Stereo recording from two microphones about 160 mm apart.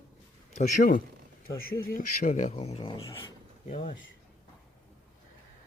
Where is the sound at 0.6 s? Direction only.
55° left (ahead or behind); by 3.0 s 35° left (ahead or behind).